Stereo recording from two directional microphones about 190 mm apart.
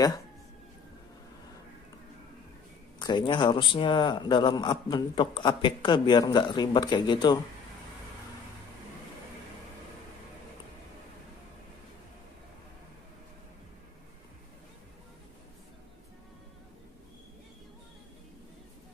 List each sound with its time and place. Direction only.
3.0 s a man's voice: 25° left (ahead or behind)